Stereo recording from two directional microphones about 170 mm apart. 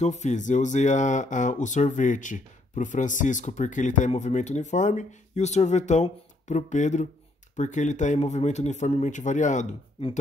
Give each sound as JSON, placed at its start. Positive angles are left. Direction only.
{"t": 0.0, "sound": "speech", "side_deg": 45}